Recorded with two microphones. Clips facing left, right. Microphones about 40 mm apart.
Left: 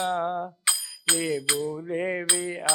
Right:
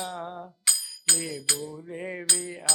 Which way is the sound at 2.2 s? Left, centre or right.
Left.